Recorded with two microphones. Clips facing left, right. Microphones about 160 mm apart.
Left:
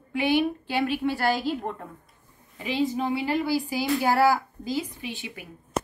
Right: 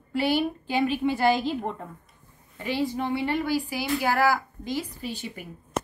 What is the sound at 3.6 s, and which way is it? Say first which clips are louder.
Speech: left 2 dB; 15° left (ahead or behind).